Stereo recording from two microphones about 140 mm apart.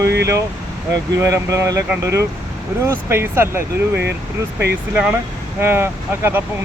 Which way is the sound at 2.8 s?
15° right (ahead or behind).